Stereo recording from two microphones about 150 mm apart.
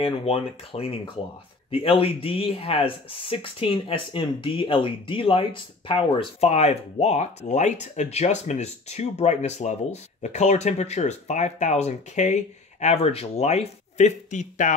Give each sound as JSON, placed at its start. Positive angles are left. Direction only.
{"t": 0.0, "sound": "speech", "side_deg": 40}